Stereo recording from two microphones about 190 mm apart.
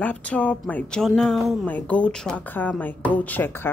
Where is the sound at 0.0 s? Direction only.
5° left (ahead or behind).